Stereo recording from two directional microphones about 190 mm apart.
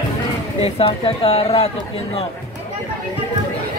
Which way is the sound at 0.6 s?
30° left (ahead or behind).